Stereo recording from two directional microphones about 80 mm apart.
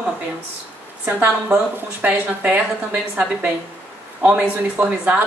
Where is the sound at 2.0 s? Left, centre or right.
Centre.